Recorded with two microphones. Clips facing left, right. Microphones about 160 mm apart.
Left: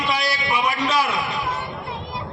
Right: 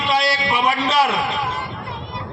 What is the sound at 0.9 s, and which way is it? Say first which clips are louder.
Speech: right 4 dB; 75° right (ahead or behind).